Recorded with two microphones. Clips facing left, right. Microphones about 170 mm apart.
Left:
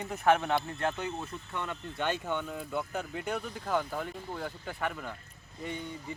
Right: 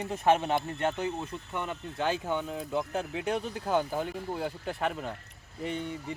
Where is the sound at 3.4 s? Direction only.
30° right (ahead or behind).